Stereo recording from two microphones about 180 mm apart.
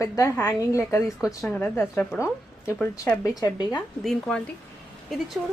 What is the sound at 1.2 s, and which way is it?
Speech, centre (ahead or behind).